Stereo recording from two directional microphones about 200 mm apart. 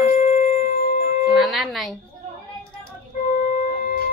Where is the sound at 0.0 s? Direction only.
35° left (ahead or behind).